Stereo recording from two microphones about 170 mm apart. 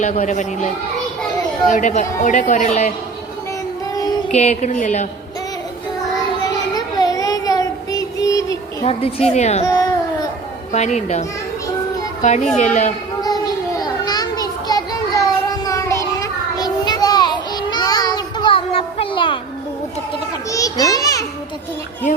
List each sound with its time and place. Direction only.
0.0 s a woman's voice: 45° left (ahead or behind)
4.3 s a woman's voice: 40° left (ahead or behind)
6.4 s child singing: 20° left (ahead or behind)
8.8 s a woman's voice: 35° left (ahead or behind)
9.6 s a sound: 20° left (ahead or behind)
10.7 s a woman's voice: 45° left (ahead or behind)
12.5 s a woman's voice: 45° left (ahead or behind)
13.2 s children playing: 20° left (ahead or behind)
20.5 s a sound: 20° left (ahead or behind)